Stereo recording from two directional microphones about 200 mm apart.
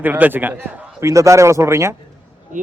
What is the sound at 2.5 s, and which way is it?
Speech, 40° right (ahead or behind).